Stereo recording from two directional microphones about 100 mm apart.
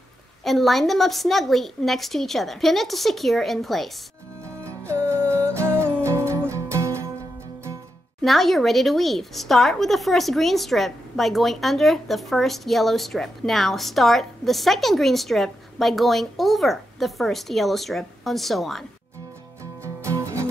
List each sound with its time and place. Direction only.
0.4 s a woman's voice: centre (ahead or behind)
4.6 s music: 30° right (ahead or behind)
8.2 s a woman's voice: centre (ahead or behind)
19.6 s music: 30° right (ahead or behind)